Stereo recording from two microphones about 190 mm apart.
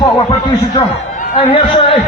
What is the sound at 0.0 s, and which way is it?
A man's voice, 25° left (ahead or behind).